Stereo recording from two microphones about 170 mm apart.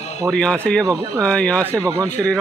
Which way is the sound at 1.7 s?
20° right (ahead or behind).